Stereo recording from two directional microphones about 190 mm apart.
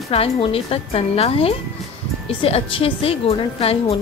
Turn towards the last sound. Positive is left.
turn(degrees=30)  # may be behind; listen again after turning